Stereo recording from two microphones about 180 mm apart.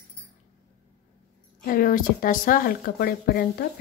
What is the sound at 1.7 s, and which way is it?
A woman's voice, 50° left (ahead or behind).